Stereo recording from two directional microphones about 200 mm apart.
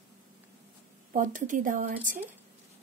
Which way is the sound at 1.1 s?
40° right (ahead or behind).